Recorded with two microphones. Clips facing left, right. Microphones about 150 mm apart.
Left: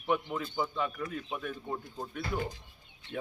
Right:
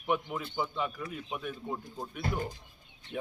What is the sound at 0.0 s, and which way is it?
Speech, 10° right (ahead or behind).